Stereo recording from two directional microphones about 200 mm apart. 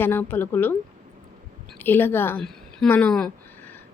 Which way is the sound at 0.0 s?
10° left (ahead or behind).